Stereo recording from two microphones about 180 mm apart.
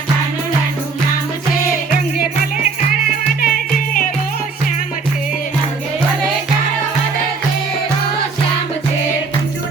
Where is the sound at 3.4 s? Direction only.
55° left (ahead or behind).